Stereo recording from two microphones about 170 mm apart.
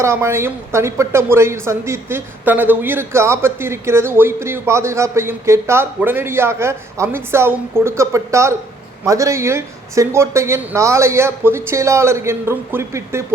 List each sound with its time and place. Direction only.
0.0 s a woman's voice: 15° right (ahead or behind)